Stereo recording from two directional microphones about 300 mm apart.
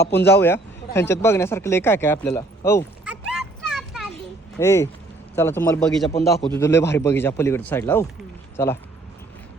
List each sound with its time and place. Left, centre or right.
0.0 s a man's voice: centre
3.0 s children playing: centre
4.5 s a man's voice: centre